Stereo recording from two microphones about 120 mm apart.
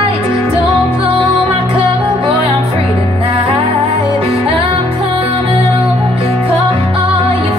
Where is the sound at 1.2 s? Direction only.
55° right (ahead or behind).